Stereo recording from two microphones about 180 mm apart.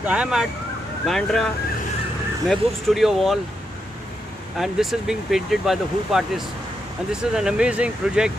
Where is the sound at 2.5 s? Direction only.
Centre (ahead or behind).